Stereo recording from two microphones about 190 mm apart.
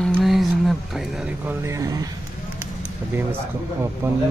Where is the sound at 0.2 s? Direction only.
Centre (ahead or behind); by 2.0 s 15° right (ahead or behind).